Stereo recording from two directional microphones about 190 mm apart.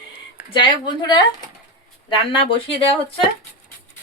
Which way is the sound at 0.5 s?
25° left (ahead or behind).